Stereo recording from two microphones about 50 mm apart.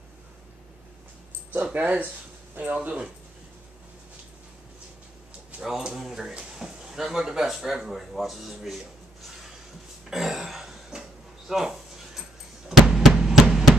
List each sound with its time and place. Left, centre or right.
1.5 s speech: right
5.6 s speech: centre
10.0 s throat clearing: centre
11.0 s a sound: centre